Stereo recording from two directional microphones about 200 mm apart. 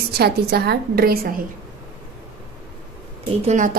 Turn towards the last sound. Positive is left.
turn(degrees=-40)  # may be behind; listen again after turning